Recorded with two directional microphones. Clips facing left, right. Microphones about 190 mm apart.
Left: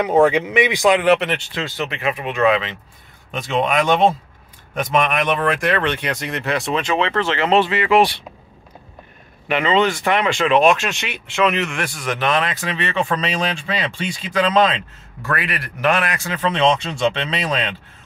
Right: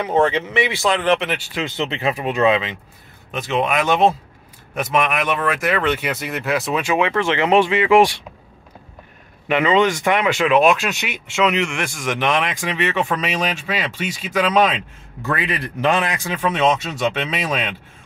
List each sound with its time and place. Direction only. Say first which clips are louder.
0.0 s speech: left 3 dB; 10° left (ahead or behind); by 1.6 s 5° right (ahead or behind)
1.6 s speech: right 2 dB; 20° right (ahead or behind)
3.3 s speech: even; 5° right (ahead or behind)
9.5 s speech: right 1 dB; 10° right (ahead or behind)
15.2 s speech: right 2 dB; 20° right (ahead or behind)